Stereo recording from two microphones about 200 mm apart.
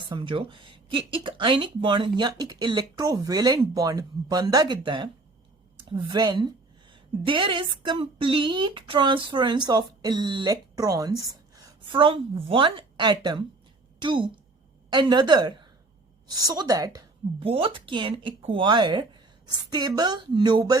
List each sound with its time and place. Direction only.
0.1 s speech: 25° right (ahead or behind)